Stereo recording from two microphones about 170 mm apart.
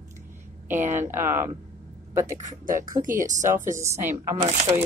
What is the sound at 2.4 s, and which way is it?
Speech, 45° right (ahead or behind).